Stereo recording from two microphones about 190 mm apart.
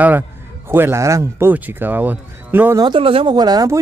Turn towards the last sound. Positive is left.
turn(degrees=-20)  # may be behind; listen again after turning